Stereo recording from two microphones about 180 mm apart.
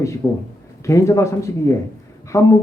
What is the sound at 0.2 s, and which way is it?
Speech, 10° left (ahead or behind).